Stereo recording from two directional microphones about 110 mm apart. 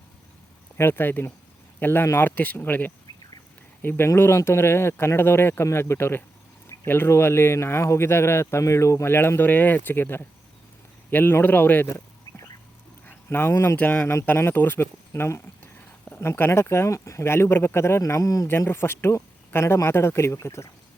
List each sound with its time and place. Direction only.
0.8 s speech: 20° left (ahead or behind)
13.1 s speech: 20° left (ahead or behind)
18.4 s speech: 20° left (ahead or behind)